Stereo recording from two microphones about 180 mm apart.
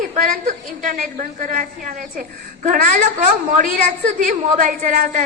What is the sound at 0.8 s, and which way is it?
A woman's voice, 45° right (ahead or behind).